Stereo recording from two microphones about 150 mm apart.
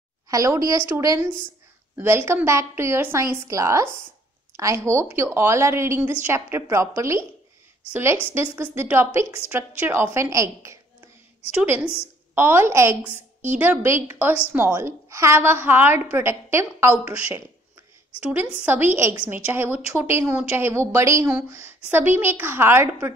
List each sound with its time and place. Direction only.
0.3 s a woman's voice: 20° right (ahead or behind)